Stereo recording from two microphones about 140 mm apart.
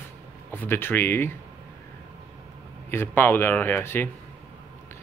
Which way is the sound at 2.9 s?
15° left (ahead or behind).